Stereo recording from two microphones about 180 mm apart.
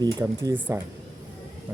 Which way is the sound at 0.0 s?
20° right (ahead or behind).